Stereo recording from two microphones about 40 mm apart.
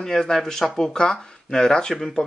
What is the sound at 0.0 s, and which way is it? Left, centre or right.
Speech, centre.